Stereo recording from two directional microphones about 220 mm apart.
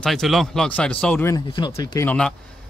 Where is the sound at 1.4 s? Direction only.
20° left (ahead or behind); by 2.4 s 5° left (ahead or behind).